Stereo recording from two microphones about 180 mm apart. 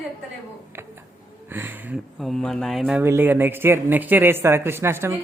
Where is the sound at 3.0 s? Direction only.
10° right (ahead or behind).